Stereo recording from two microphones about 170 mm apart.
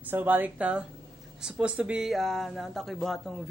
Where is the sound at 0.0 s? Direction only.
10° right (ahead or behind).